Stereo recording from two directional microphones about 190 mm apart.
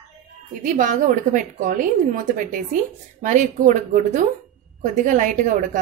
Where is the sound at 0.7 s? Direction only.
45° right (ahead or behind).